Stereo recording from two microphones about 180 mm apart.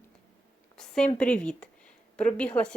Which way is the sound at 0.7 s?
5° left (ahead or behind).